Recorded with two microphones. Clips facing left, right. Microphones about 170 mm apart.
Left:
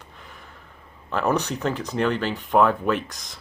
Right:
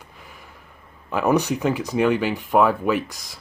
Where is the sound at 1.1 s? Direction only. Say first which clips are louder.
Right 4 dB; 10° right (ahead or behind).